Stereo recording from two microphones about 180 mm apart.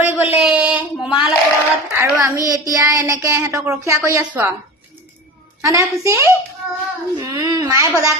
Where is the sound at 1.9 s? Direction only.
15° right (ahead or behind).